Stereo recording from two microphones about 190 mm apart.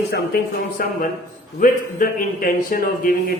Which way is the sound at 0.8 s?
50° left (ahead or behind).